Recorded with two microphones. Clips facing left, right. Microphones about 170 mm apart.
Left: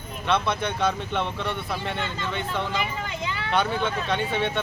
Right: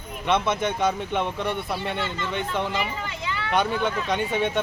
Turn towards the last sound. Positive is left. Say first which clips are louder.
# right 2 dB
turn(degrees=-15)  # may be behind; listen again after turning